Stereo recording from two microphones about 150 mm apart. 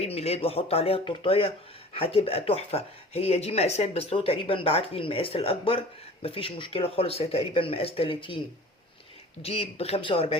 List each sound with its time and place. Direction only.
0.0 s speech: 40° left (ahead or behind)
9.4 s speech: 40° left (ahead or behind)